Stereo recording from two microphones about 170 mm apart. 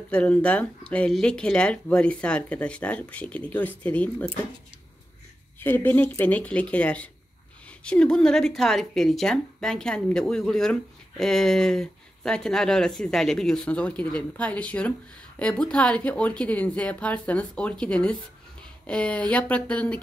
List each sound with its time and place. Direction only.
0.1 s speech: 5° left (ahead or behind)
5.6 s speech: 10° left (ahead or behind)